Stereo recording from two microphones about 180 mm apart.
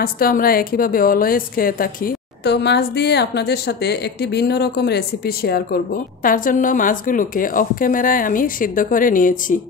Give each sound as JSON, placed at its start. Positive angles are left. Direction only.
{"t": 0.0, "sound": "a woman's voice", "side_deg": 55}